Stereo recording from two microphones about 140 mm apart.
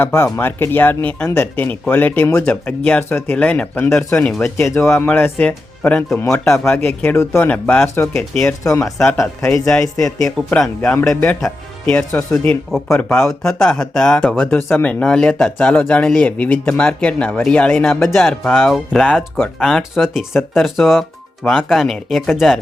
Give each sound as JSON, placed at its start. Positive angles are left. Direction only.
{"t": 0.0, "sound": "speech", "side_deg": 15}
{"t": 6.7, "sound": "speech", "side_deg": 15}
{"t": 8.8, "sound": "speech", "side_deg": 0}
{"t": 11.1, "sound": "speech", "side_deg": 15}